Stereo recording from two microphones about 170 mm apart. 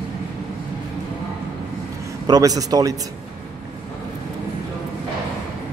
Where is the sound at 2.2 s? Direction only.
20° right (ahead or behind).